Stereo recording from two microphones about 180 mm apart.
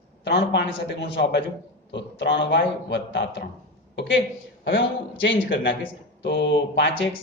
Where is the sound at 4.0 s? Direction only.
90° left.